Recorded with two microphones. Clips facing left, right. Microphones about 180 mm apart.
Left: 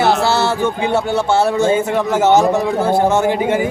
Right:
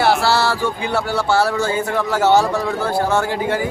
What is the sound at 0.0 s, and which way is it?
Speech, 20° left (ahead or behind).